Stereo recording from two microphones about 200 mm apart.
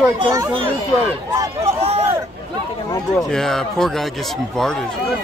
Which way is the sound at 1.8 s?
30° right (ahead or behind).